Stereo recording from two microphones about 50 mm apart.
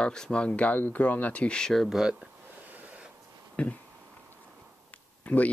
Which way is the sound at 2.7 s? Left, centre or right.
Right.